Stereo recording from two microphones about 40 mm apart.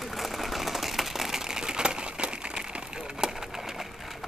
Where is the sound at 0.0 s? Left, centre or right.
Centre.